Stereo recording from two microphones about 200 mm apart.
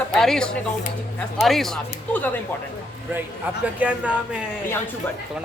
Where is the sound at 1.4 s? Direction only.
Centre (ahead or behind).